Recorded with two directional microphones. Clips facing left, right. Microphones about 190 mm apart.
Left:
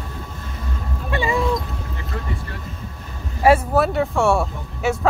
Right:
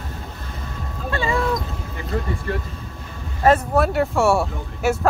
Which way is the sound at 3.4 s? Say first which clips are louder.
Left 1 dB; 10° left (ahead or behind).